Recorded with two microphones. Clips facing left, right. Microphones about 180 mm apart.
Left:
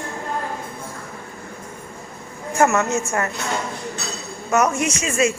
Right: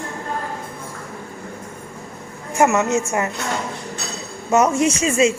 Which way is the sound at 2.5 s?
20° right (ahead or behind).